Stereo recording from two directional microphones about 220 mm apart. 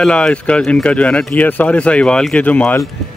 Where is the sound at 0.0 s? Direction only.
5° left (ahead or behind).